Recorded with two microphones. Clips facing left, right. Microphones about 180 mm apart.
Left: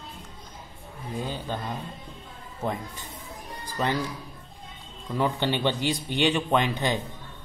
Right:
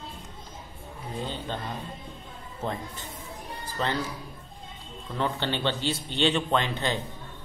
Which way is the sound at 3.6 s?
15° left (ahead or behind).